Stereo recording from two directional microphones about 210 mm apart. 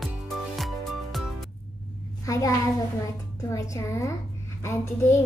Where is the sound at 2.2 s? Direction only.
15° left (ahead or behind).